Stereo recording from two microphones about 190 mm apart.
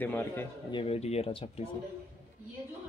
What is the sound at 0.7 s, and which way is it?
Speech, 30° left (ahead or behind).